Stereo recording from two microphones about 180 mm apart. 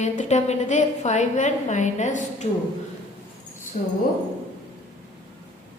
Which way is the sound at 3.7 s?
50° left (ahead or behind).